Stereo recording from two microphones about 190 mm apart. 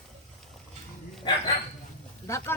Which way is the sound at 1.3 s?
25° left (ahead or behind).